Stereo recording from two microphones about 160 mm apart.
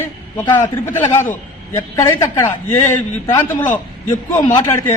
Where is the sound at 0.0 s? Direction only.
15° left (ahead or behind).